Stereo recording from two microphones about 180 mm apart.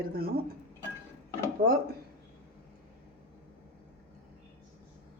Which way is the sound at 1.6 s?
50° right (ahead or behind).